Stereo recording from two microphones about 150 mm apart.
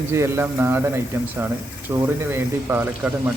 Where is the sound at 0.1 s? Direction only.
15° right (ahead or behind).